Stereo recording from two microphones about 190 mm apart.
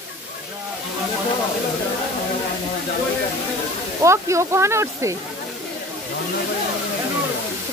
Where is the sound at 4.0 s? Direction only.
15° right (ahead or behind).